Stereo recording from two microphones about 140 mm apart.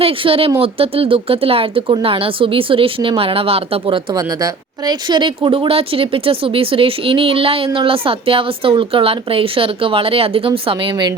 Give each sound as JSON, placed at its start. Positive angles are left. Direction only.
{"t": 0.0, "sound": "speech", "side_deg": -40}